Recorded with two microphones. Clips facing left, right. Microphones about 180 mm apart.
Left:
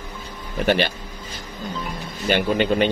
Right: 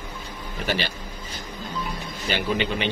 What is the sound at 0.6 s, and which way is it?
Speech, 55° left (ahead or behind).